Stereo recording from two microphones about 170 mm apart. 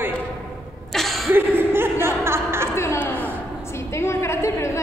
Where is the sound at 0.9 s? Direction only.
Centre (ahead or behind).